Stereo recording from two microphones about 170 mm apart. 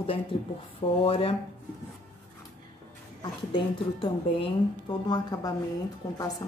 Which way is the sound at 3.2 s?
30° left (ahead or behind).